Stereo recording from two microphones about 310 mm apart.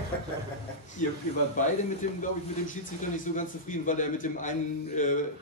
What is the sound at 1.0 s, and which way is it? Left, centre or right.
A man's voice, left.